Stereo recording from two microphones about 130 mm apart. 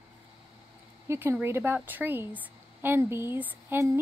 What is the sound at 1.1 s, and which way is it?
A woman's voice, 20° right (ahead or behind).